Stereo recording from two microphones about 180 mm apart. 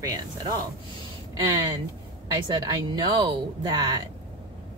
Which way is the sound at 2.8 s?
25° right (ahead or behind).